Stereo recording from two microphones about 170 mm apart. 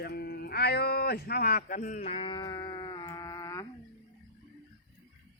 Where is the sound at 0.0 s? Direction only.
70° left (ahead or behind); by 3.7 s 20° left (ahead or behind).